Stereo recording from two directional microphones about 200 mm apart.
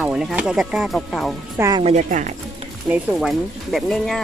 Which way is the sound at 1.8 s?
35° right (ahead or behind).